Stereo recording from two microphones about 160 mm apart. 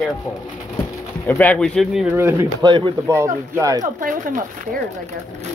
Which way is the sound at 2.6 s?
30° right (ahead or behind).